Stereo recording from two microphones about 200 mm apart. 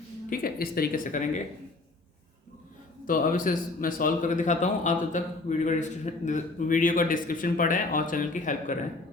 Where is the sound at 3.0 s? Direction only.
45° left (ahead or behind).